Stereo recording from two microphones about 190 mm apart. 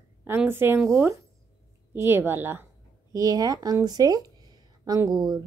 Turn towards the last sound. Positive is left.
turn(degrees=-20)  # may be behind; listen again after turning